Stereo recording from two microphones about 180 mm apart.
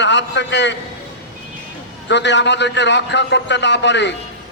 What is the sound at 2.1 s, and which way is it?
A man's voice, 75° left (ahead or behind).